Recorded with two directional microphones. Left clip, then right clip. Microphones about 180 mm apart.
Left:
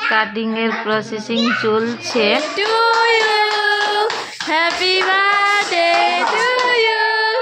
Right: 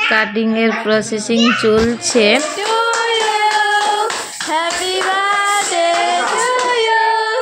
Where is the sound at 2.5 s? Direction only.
20° left (ahead or behind).